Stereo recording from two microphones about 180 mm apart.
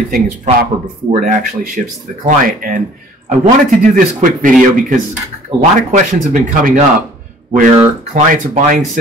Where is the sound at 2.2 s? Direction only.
50° right (ahead or behind).